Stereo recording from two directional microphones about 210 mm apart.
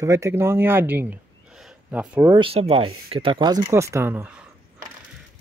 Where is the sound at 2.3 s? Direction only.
25° right (ahead or behind); by 4.4 s 10° right (ahead or behind).